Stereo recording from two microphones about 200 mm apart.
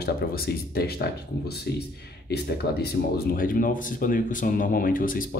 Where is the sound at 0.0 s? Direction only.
50° left (ahead or behind).